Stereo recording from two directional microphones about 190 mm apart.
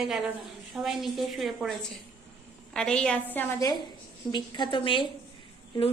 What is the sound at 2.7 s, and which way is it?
A woman's voice, 5° left (ahead or behind).